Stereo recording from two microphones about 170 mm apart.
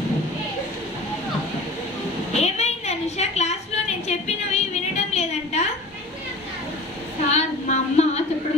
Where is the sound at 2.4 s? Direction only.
40° left (ahead or behind).